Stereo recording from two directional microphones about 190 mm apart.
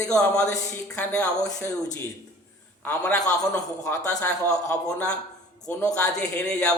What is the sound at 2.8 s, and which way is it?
Speech, 5° left (ahead or behind).